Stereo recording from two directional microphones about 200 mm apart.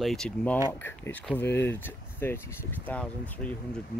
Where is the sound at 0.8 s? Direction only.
10° left (ahead or behind).